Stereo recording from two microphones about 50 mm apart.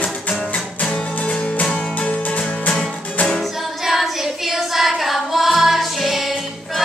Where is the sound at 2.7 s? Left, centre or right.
Centre.